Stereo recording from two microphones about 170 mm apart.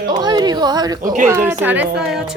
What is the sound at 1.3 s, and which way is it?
Speech, 15° right (ahead or behind).